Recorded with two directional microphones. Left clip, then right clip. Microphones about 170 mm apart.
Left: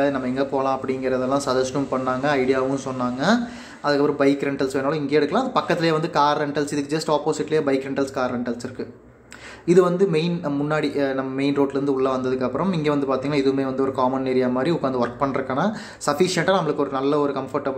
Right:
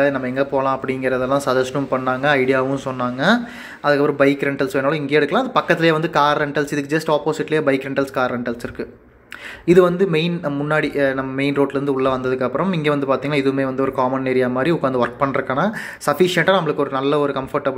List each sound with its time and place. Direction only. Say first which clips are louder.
0.0 s speech: right 4 dB; 15° right (ahead or behind)
9.7 s speech: right 3 dB; 15° right (ahead or behind)